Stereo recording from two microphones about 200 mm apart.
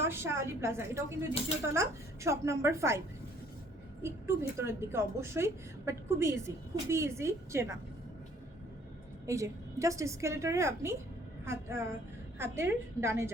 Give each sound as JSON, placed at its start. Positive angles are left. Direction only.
{"t": 0.0, "sound": "a woman's voice", "side_deg": -10}
{"t": 1.3, "sound": "speech", "side_deg": 30}
{"t": 1.7, "sound": "a woman's voice", "side_deg": -15}
{"t": 4.0, "sound": "a woman's voice", "side_deg": -15}
{"t": 9.2, "sound": "a woman's voice", "side_deg": -15}